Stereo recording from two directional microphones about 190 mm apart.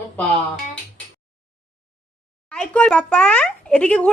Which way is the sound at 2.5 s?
5° left (ahead or behind).